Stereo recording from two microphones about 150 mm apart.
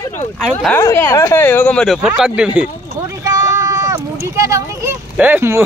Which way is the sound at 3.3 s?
20° right (ahead or behind).